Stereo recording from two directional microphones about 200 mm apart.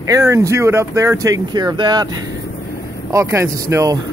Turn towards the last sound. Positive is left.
turn(degrees=-15)  # may be behind; listen again after turning